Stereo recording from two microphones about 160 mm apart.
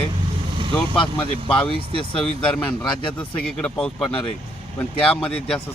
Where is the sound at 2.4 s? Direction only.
5° left (ahead or behind).